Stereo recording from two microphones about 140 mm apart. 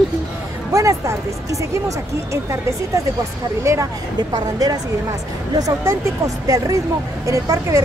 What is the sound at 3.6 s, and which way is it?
Speech, 20° right (ahead or behind).